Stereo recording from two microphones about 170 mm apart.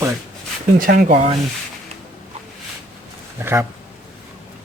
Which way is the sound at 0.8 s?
55° right (ahead or behind).